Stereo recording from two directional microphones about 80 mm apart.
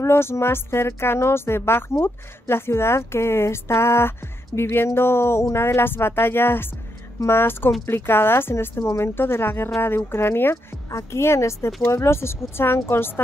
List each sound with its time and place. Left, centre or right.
0.0 s a woman's voice: left